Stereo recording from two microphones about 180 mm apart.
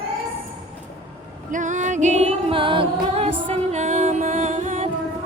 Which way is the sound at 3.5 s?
40° right (ahead or behind).